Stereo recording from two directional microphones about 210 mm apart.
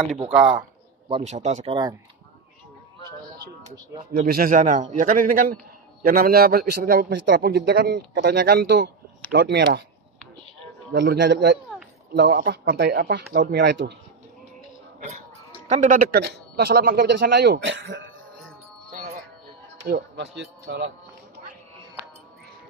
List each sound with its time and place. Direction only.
0.3 s speech: 5° right (ahead or behind)
1.0 s a man's voice: 30° right (ahead or behind)
4.1 s a man's voice: 45° right (ahead or behind)
10.9 s a man's voice: 55° right (ahead or behind)
12.1 s a man's voice: 45° right (ahead or behind)
15.0 s a sound: 35° right (ahead or behind)
15.7 s a man's voice: 40° right (ahead or behind); by 18.0 s 60° right (ahead or behind)
20.2 s a man's voice: 55° right (ahead or behind)